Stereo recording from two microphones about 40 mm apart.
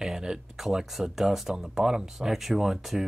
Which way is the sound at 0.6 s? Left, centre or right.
Centre.